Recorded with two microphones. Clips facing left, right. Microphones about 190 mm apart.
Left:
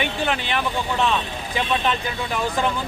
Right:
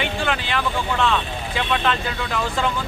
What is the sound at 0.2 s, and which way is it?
Speech, 15° left (ahead or behind).